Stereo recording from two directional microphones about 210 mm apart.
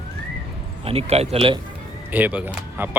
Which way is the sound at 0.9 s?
30° right (ahead or behind).